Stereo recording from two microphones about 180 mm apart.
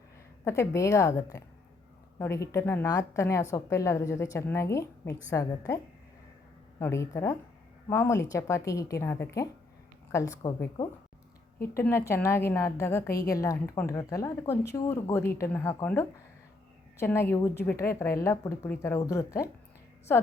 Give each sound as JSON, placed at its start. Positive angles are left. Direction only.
{"t": 0.4, "sound": "a woman's voice", "side_deg": 15}